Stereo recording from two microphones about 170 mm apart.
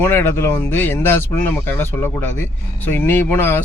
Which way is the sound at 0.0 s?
15° left (ahead or behind).